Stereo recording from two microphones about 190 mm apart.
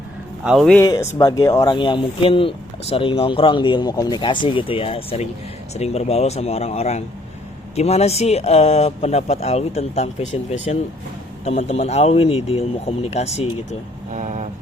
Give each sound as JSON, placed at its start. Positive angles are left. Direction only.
{"t": 0.4, "sound": "speech", "side_deg": 0}
{"t": 0.8, "sound": "speech", "side_deg": 20}
{"t": 14.1, "sound": "vehicle", "side_deg": -40}